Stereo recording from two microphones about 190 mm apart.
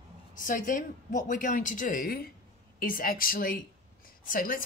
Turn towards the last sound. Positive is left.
turn(degrees=45)  # may be behind; listen again after turning